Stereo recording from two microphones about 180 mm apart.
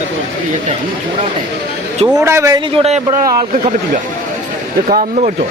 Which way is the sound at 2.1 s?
15° right (ahead or behind).